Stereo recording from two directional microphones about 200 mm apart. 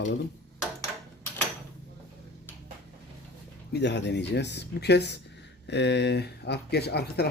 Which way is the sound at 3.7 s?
60° left (ahead or behind).